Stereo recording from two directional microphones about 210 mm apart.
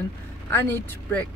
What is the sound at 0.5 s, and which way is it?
Speech, 10° left (ahead or behind).